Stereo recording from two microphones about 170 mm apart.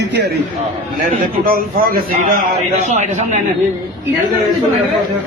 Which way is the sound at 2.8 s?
40° right (ahead or behind).